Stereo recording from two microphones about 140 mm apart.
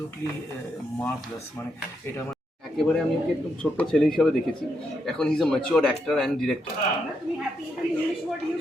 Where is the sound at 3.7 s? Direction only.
Centre (ahead or behind).